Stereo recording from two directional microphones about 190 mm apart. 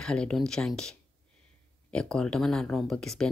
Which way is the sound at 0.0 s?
5° left (ahead or behind).